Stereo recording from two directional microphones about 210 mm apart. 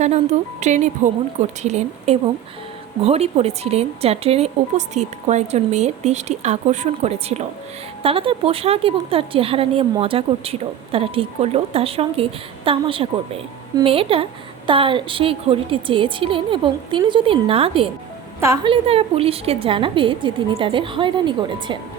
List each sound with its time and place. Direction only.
0.0 s a woman's voice: 35° right (ahead or behind)
18.3 s a woman's voice: 15° right (ahead or behind)
18.7 s a woman's voice: 25° right (ahead or behind)